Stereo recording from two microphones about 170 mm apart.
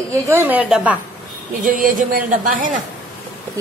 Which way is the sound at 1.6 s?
50° right (ahead or behind).